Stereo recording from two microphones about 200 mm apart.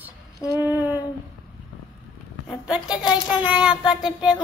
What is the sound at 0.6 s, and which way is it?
Child singing, 10° right (ahead or behind).